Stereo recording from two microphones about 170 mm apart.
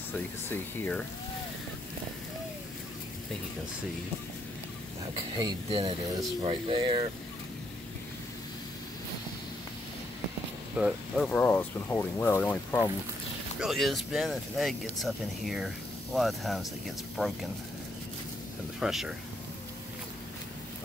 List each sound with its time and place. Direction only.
0.5 s speech: 10° left (ahead or behind)
5.3 s speech: 25° right (ahead or behind)
5.7 s speech: 35° right (ahead or behind)
10.8 s speech: 5° right (ahead or behind)
11.2 s speech: 10° left (ahead or behind)
13.6 s speech: centre (ahead or behind)
18.8 s speech: 5° right (ahead or behind)